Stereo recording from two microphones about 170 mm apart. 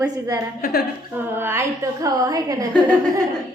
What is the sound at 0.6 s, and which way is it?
Speech, 70° left (ahead or behind).